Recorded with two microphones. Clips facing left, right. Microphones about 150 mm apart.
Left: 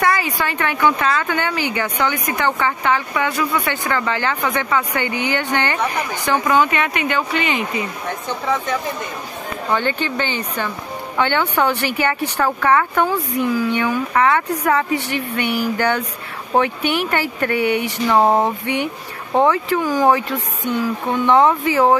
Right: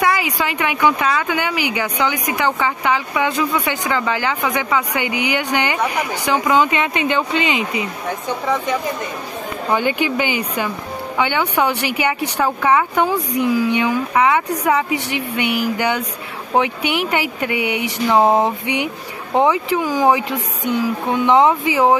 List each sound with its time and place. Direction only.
0.0 s speech: 15° right (ahead or behind)
9.7 s speech: 10° right (ahead or behind)